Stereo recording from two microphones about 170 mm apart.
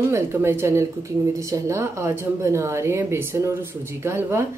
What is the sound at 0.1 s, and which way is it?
Speech, 15° right (ahead or behind).